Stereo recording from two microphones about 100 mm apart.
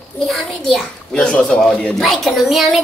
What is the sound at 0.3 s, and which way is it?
A child's voice, 5° left (ahead or behind).